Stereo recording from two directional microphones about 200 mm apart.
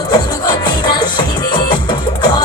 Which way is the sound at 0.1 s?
20° left (ahead or behind).